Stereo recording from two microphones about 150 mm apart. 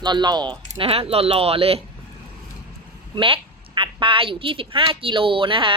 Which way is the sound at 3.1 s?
35° right (ahead or behind).